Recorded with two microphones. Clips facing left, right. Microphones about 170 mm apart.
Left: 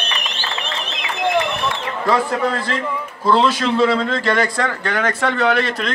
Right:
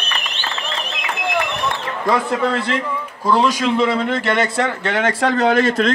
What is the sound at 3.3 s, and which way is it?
A man's voice, 15° right (ahead or behind).